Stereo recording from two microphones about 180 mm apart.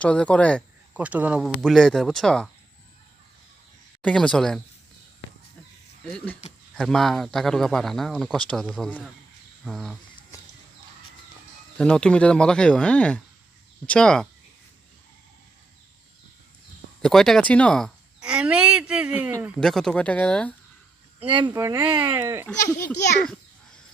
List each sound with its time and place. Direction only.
0.0 s speech: 5° left (ahead or behind)
0.9 s speech: 10° right (ahead or behind)
1.5 s speech: 5° left (ahead or behind)
4.0 s speech: 5° left (ahead or behind)
6.7 s speech: 5° left (ahead or behind)
11.8 s speech: 5° left (ahead or behind)
17.0 s speech: centre (ahead or behind)
19.5 s speech: 5° left (ahead or behind)
21.2 s speech: 25° right (ahead or behind)
22.4 s speech: 5° left (ahead or behind)